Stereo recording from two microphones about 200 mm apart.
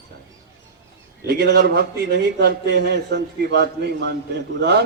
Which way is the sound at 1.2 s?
50° right (ahead or behind).